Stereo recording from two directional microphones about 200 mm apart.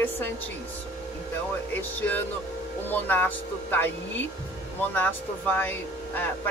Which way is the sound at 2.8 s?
10° left (ahead or behind).